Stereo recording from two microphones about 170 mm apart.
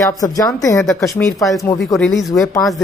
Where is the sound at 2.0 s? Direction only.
Centre (ahead or behind).